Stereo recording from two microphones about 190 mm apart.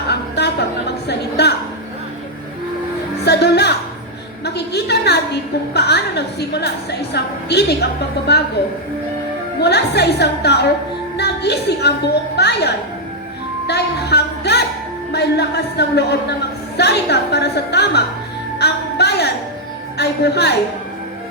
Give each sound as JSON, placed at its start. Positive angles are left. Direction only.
{"t": 0.1, "sound": "a sound", "side_deg": 60}
{"t": 3.2, "sound": "music", "side_deg": 60}
{"t": 4.4, "sound": "a sound", "side_deg": 60}
{"t": 7.1, "sound": "a woman's voice", "side_deg": 60}
{"t": 9.6, "sound": "a woman's voice", "side_deg": 60}
{"t": 13.7, "sound": "music", "side_deg": 60}
{"t": 15.1, "sound": "a woman's voice", "side_deg": 60}
{"t": 18.6, "sound": "music", "side_deg": 60}
{"t": 20.0, "sound": "a woman's voice", "side_deg": 60}